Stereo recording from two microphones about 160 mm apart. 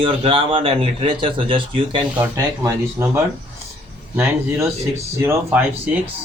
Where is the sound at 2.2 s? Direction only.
20° right (ahead or behind).